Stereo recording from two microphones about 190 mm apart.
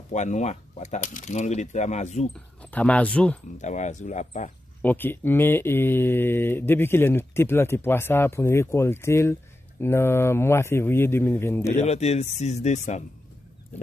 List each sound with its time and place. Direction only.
0.1 s speech: 40° left (ahead or behind)
2.3 s speech: 5° left (ahead or behind)
3.5 s speech: 40° left (ahead or behind)
4.8 s speech: 10° left (ahead or behind)
11.7 s speech: 35° left (ahead or behind)